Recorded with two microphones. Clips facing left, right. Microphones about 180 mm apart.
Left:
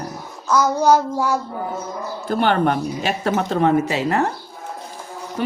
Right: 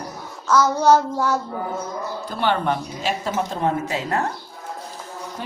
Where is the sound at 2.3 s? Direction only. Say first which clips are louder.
Left 4 dB; 55° left (ahead or behind); by 4.3 s 75° left (ahead or behind).